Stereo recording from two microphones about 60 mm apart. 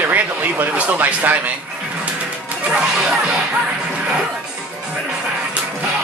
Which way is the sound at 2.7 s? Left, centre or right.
Centre.